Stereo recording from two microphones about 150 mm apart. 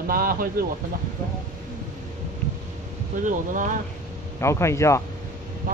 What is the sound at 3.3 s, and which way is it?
Speech, 60° right (ahead or behind).